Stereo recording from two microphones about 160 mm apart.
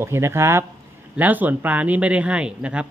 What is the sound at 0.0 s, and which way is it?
Speech, 15° right (ahead or behind).